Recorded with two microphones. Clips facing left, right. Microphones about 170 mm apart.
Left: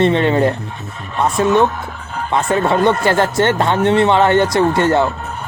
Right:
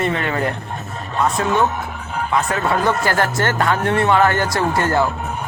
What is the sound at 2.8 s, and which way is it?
Speech, centre (ahead or behind).